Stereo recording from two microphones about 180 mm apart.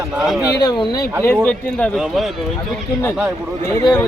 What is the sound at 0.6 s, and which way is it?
Speech, 20° left (ahead or behind).